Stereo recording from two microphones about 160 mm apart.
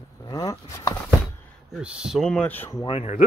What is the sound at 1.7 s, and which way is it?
Speech, 5° right (ahead or behind).